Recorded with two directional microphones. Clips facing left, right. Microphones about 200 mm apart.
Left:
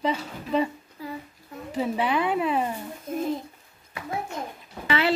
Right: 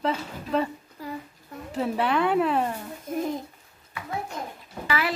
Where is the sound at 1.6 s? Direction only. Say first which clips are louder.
Even; centre (ahead or behind).